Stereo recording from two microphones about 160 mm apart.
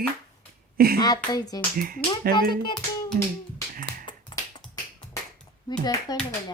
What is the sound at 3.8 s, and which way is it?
Finger snapping, 30° left (ahead or behind).